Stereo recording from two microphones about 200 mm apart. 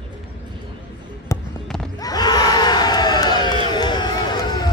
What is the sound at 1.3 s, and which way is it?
Music, 15° left (ahead or behind).